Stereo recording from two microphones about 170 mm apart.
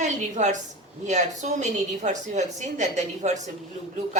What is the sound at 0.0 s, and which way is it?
A woman's voice, 45° right (ahead or behind).